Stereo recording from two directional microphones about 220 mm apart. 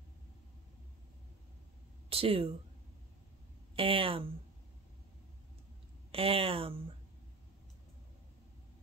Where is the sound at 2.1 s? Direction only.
25° right (ahead or behind).